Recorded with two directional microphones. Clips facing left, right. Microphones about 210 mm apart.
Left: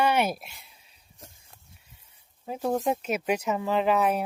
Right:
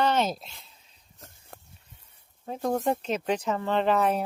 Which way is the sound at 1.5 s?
60° right (ahead or behind).